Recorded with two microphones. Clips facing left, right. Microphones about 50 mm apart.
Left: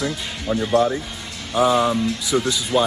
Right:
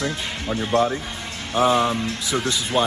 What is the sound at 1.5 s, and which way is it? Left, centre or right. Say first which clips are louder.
Speech: left 1 dB; right.